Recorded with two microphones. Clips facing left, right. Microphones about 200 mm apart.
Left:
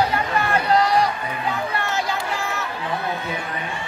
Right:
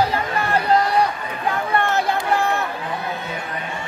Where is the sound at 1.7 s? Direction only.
55° right (ahead or behind).